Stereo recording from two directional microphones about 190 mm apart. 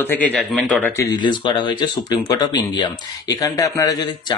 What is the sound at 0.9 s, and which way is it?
Speech, 25° left (ahead or behind).